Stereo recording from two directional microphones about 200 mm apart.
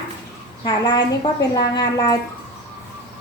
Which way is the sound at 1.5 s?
20° left (ahead or behind).